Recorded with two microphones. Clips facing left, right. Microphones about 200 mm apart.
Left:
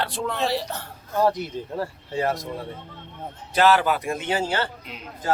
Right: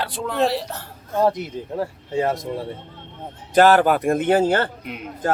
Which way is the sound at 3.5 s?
50° right (ahead or behind).